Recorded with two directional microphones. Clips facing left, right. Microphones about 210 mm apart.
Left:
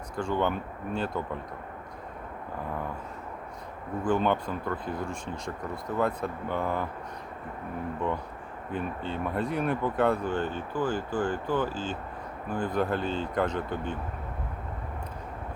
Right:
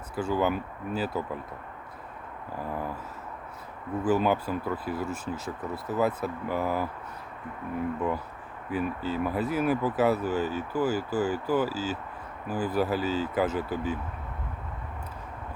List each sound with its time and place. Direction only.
0.2 s speech: 5° right (ahead or behind)
4.0 s speech: 5° right (ahead or behind)
8.7 s speech: 5° right (ahead or behind)